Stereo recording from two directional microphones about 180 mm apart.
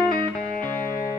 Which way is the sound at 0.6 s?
10° left (ahead or behind).